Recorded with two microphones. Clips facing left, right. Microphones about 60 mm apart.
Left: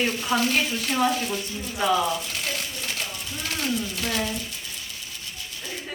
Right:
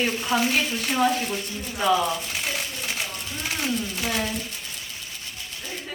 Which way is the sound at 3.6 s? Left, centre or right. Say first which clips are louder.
Even; centre.